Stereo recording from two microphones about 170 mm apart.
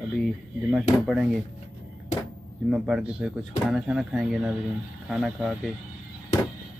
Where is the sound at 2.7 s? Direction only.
5° right (ahead or behind).